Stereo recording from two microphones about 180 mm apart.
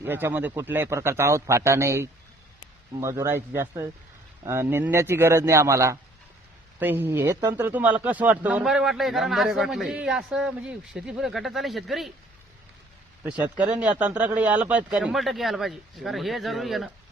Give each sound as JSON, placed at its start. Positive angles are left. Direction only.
{"t": 0.0, "sound": "a man's voice", "side_deg": -10}
{"t": 13.2, "sound": "speech", "side_deg": -10}